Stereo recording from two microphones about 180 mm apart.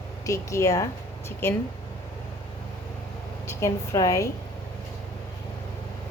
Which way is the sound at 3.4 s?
15° left (ahead or behind).